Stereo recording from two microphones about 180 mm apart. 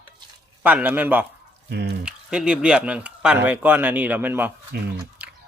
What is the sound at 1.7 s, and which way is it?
Speech, 70° right (ahead or behind).